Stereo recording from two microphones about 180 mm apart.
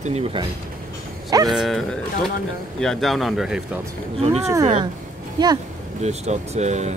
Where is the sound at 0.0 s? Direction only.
35° right (ahead or behind).